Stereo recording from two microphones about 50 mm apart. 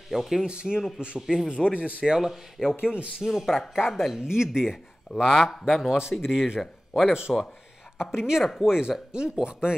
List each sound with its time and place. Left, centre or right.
0.1 s speech: centre
0.5 s speech: centre
1.5 s speech: centre
2.0 s speech: centre
2.8 s speech: right
3.3 s speech: centre
4.2 s speech: centre
5.9 s speech: centre